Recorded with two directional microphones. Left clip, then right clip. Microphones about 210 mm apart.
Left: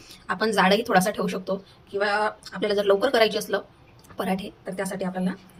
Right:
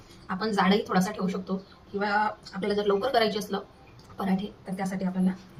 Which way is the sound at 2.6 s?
55° left (ahead or behind).